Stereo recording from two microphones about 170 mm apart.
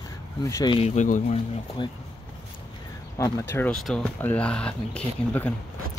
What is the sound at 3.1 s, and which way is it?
Speech, 20° left (ahead or behind).